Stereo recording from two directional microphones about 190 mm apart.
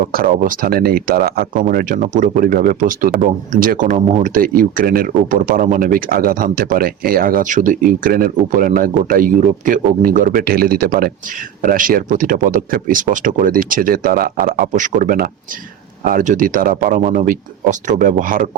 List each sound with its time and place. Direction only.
0.0 s speech: 50° right (ahead or behind)